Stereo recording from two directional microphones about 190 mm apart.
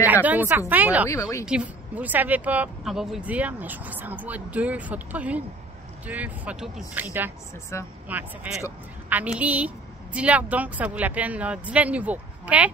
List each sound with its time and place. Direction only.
0.0 s speech: 10° right (ahead or behind)
7.7 s speech: 15° left (ahead or behind)
8.1 s speech: 10° right (ahead or behind)